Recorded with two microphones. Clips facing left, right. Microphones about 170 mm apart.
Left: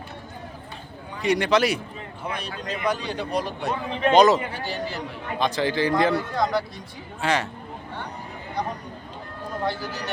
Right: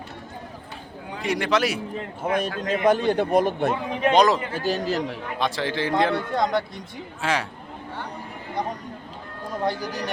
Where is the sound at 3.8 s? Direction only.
15° right (ahead or behind).